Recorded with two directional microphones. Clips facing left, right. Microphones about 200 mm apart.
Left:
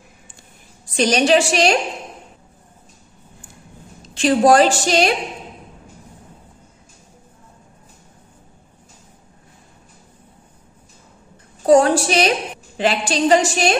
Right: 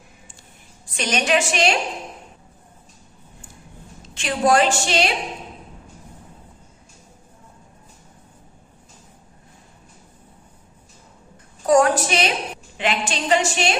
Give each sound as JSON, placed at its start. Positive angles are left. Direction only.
{"t": 0.9, "sound": "a woman's voice", "side_deg": 35}
{"t": 4.1, "sound": "a woman's voice", "side_deg": 35}
{"t": 11.6, "sound": "a woman's voice", "side_deg": 30}